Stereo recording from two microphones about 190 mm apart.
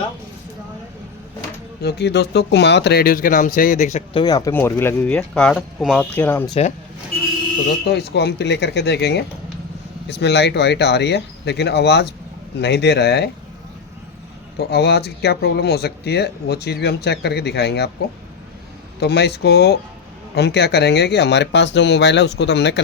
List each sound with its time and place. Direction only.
1.8 s speech: 60° left (ahead or behind); by 4.2 s 35° left (ahead or behind)
4.2 s speech: 20° left (ahead or behind)
6.5 s speech: 35° left (ahead or behind)
7.9 s speech: 60° left (ahead or behind)
14.6 s speech: 60° left (ahead or behind)
18.9 s speech: 60° left (ahead or behind)